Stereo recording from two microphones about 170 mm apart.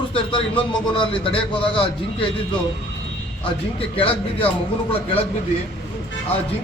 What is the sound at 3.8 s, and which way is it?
Speech, 30° left (ahead or behind).